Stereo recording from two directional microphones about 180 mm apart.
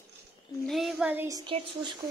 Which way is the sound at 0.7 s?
Centre (ahead or behind).